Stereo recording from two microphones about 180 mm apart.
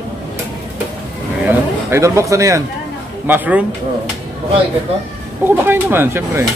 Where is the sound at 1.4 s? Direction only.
15° right (ahead or behind).